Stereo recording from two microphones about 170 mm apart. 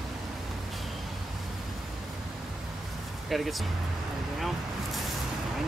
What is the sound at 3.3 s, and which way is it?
Speech, centre (ahead or behind).